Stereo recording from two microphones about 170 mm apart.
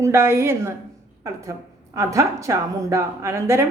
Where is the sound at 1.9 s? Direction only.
20° right (ahead or behind).